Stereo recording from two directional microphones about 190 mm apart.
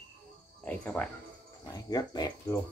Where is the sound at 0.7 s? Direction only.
10° left (ahead or behind).